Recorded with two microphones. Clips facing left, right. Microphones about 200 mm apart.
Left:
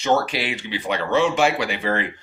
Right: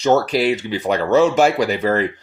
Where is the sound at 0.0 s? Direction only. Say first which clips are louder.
Right 6 dB; 40° right (ahead or behind).